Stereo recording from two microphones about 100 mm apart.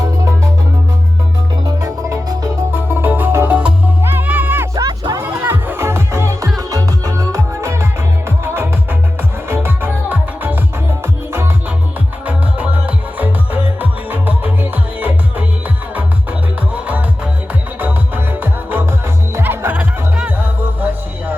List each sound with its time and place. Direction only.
0.0 s music: 35° right (ahead or behind)
1.6 s music: 35° right (ahead or behind)
2.7 s music: 20° right (ahead or behind)
4.7 s music: 35° right (ahead or behind)
5.2 s music: 20° right (ahead or behind)
12.2 s music: 15° right (ahead or behind)
16.7 s music: 15° right (ahead or behind)